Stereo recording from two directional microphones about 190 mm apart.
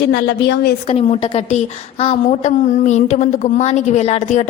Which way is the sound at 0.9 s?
30° left (ahead or behind).